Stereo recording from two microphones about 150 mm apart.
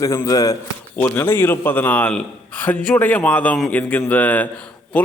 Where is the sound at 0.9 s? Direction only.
10° left (ahead or behind).